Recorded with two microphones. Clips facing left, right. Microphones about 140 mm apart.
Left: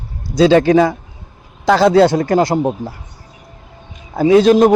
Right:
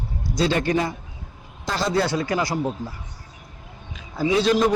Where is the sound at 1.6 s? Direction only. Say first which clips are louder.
Left 13 dB; 75° left (ahead or behind).